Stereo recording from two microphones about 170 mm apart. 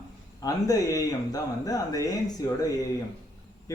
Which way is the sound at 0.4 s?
20° left (ahead or behind).